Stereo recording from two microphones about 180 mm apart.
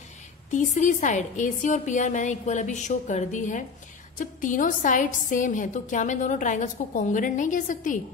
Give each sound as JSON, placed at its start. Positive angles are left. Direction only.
{"t": 0.5, "sound": "a woman's voice", "side_deg": 45}